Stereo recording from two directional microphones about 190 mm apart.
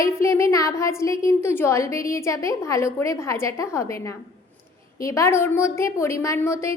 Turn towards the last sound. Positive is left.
turn(degrees=15)  # may be behind; listen again after turning